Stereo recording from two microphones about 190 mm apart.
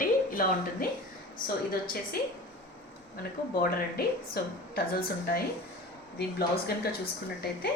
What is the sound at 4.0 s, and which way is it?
A woman's voice, 55° left (ahead or behind).